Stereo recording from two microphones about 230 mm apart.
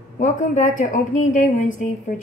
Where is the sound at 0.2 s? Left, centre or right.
Left.